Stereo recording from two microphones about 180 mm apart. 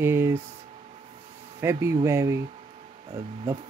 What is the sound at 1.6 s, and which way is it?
Speech, 15° right (ahead or behind).